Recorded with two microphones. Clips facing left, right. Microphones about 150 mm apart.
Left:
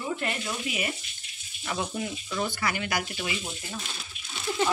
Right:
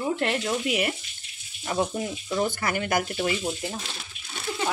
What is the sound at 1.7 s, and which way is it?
Speech, 30° right (ahead or behind).